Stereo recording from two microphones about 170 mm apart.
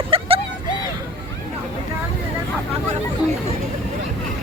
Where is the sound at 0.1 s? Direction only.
35° right (ahead or behind).